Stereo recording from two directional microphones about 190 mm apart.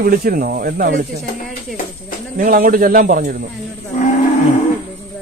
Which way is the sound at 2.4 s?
50° right (ahead or behind).